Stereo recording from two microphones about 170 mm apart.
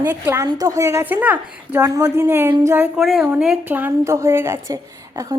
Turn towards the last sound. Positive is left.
turn(degrees=-20)  # may be behind; listen again after turning